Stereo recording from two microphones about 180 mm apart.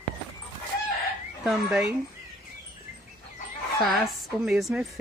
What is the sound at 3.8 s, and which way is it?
A woman's voice, centre (ahead or behind).